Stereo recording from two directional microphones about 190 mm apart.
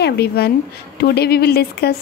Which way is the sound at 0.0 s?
55° left (ahead or behind).